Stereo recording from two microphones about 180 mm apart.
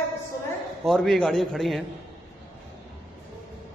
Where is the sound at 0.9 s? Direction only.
5° left (ahead or behind).